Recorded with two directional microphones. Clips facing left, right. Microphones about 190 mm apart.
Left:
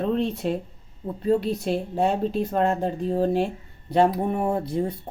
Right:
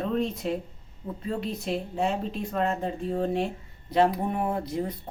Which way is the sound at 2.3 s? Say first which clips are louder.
Left 5 dB; 35° left (ahead or behind).